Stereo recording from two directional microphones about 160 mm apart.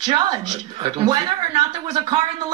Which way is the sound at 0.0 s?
30° right (ahead or behind).